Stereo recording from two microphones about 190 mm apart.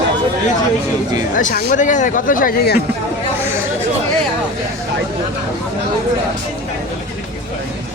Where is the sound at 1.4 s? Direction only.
40° left (ahead or behind).